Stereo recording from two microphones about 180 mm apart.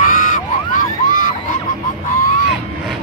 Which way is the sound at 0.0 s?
45° left (ahead or behind).